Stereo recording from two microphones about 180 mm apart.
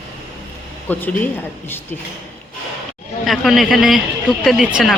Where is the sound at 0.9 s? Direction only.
10° left (ahead or behind).